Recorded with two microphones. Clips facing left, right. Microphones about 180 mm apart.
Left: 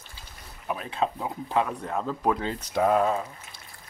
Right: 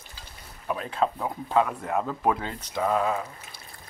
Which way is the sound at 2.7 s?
50° left (ahead or behind).